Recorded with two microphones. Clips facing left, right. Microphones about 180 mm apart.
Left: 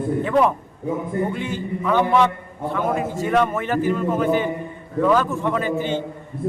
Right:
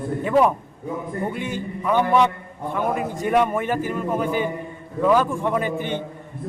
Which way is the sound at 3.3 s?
15° right (ahead or behind).